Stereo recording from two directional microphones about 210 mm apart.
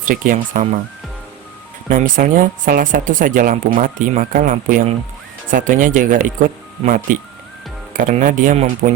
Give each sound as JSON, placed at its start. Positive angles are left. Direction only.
{"t": 0.1, "sound": "speech", "side_deg": -40}
{"t": 1.9, "sound": "speech", "side_deg": -40}